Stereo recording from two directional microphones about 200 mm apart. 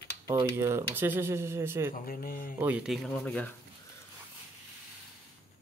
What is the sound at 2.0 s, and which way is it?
Speech, 45° left (ahead or behind).